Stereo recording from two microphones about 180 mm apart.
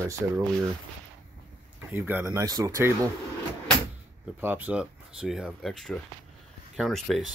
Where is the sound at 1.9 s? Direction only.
10° right (ahead or behind).